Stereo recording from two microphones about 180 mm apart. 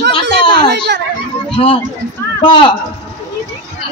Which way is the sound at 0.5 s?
65° right (ahead or behind).